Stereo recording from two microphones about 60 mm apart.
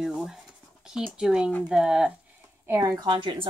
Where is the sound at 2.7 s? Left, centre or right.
Right.